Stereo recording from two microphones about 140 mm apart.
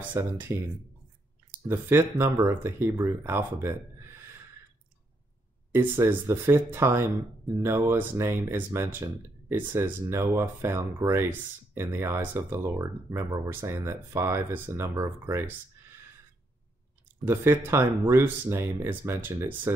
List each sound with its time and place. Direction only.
0.2 s speech: 20° right (ahead or behind)
1.7 s speech: 15° right (ahead or behind)
5.7 s speech: 15° right (ahead or behind)
17.3 s speech: 15° right (ahead or behind)